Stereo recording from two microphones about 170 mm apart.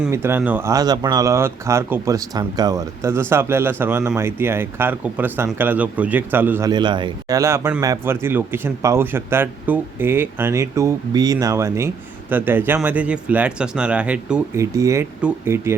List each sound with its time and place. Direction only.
0.1 s speech: 15° right (ahead or behind)
6.7 s speech: 25° right (ahead or behind); by 14.4 s 5° right (ahead or behind)
14.5 s speech: 20° right (ahead or behind)